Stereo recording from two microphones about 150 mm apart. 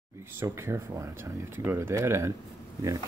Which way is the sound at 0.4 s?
15° right (ahead or behind).